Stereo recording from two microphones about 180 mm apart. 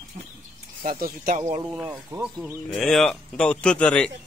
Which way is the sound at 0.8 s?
50° right (ahead or behind).